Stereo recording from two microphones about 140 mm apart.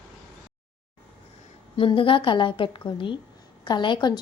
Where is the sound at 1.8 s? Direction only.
40° left (ahead or behind).